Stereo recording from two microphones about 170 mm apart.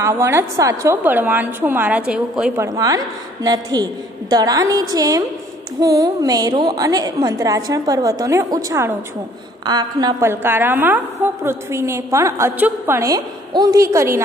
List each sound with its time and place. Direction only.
0.0 s a woman's voice: 15° right (ahead or behind)
2.5 s a woman's voice: 20° right (ahead or behind)